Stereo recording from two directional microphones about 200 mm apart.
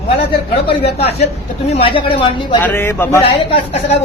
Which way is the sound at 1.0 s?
30° left (ahead or behind).